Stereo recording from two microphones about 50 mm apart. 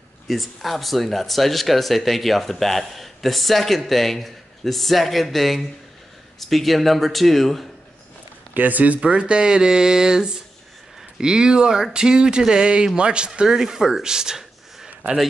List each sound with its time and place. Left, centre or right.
0.3 s speech: centre
8.5 s speech: right; by 15.2 s centre